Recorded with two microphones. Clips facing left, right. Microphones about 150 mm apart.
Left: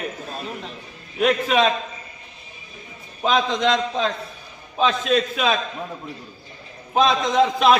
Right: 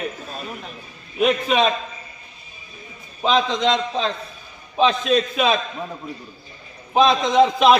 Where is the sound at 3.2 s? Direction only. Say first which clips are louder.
Right 1 dB; 5° left (ahead or behind).